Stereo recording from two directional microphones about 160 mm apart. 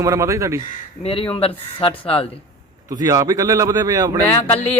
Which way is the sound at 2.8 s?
20° right (ahead or behind).